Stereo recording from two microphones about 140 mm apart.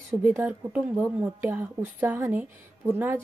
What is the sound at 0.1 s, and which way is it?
A woman's voice, 15° right (ahead or behind).